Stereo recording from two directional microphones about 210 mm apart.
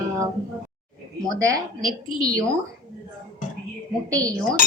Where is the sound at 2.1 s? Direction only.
15° right (ahead or behind).